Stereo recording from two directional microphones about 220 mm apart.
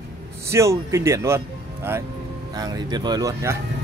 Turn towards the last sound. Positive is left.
turn(degrees=-15)  # may be behind; listen again after turning